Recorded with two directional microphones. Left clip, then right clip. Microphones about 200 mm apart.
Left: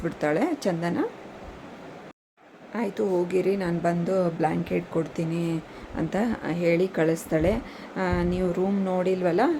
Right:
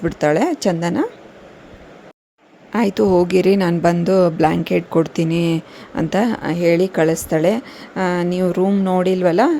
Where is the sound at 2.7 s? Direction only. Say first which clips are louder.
Right 11 dB; 45° right (ahead or behind).